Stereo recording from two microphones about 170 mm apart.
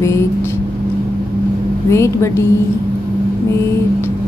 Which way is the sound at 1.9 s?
15° left (ahead or behind).